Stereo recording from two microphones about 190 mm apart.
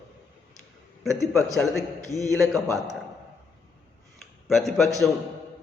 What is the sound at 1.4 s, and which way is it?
Speech, centre (ahead or behind).